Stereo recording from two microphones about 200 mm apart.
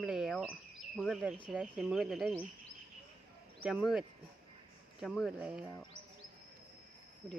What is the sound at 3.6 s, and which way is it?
Speech, centre (ahead or behind).